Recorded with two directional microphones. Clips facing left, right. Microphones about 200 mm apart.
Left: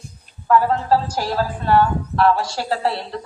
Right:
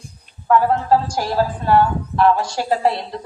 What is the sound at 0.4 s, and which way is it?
A woman's voice, 15° right (ahead or behind).